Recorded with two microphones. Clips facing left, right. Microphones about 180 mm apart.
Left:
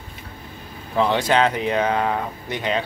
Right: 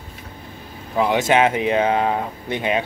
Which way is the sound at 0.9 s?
10° right (ahead or behind).